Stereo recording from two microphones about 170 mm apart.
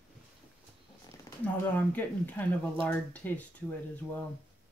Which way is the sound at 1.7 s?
10° left (ahead or behind).